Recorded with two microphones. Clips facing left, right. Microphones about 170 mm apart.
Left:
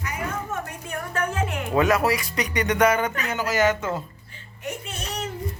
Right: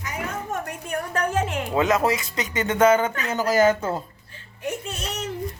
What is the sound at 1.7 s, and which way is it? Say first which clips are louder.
Speech: left 1 dB; 20° right (ahead or behind).